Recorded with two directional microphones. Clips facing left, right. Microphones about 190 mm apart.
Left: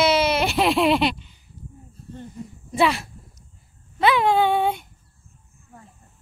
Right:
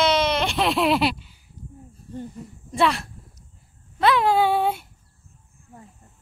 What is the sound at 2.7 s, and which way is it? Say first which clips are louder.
Speech: left 1 dB; centre (ahead or behind).